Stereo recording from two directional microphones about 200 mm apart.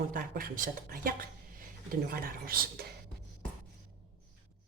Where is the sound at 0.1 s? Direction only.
45° right (ahead or behind).